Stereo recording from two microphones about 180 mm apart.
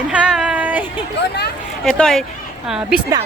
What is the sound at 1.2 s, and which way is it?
Speech, 65° left (ahead or behind).